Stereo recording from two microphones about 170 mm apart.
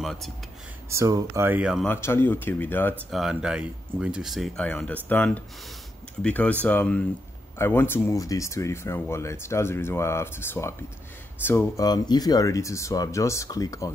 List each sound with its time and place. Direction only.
0.0 s a sound: centre (ahead or behind)
0.8 s speech: 20° right (ahead or behind)
1.9 s speech: 15° left (ahead or behind)
3.1 s speech: centre (ahead or behind); by 13.9 s 20° left (ahead or behind)